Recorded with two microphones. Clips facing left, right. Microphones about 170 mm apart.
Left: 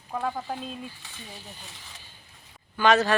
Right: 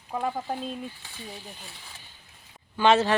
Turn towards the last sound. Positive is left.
turn(degrees=-25)  # may be behind; listen again after turning